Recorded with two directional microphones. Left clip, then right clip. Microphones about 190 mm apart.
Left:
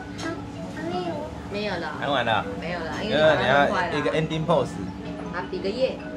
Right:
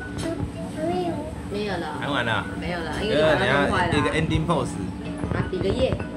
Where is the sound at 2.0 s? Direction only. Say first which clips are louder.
Left 2 dB; 20° left (ahead or behind).